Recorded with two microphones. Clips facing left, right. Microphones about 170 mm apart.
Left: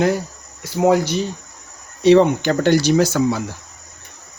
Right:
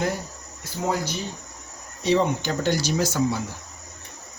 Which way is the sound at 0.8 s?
80° left.